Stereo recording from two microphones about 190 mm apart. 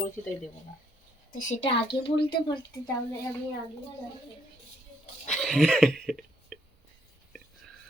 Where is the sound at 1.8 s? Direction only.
65° left (ahead or behind).